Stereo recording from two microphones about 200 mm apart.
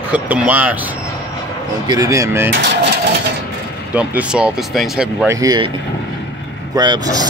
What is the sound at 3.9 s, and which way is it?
Speech, 10° right (ahead or behind).